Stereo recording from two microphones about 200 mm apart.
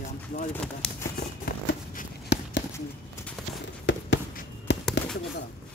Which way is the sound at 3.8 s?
65° left (ahead or behind).